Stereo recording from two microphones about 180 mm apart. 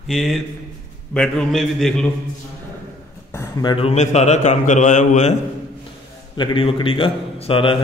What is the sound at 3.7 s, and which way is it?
A man's voice, 35° left (ahead or behind).